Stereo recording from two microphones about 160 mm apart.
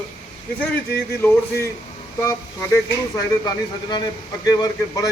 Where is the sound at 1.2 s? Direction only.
15° left (ahead or behind).